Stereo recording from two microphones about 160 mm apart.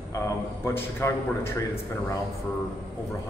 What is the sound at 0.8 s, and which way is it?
Speech, 15° left (ahead or behind).